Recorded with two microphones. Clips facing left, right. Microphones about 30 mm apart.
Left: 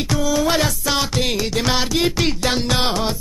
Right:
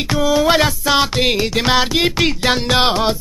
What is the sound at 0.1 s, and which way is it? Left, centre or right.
Music, right.